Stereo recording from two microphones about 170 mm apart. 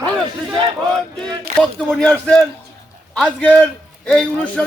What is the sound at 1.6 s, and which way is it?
A man's voice, 5° left (ahead or behind).